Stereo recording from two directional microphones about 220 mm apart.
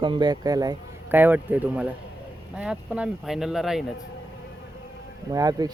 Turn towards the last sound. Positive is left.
turn(degrees=-15)  # may be behind; listen again after turning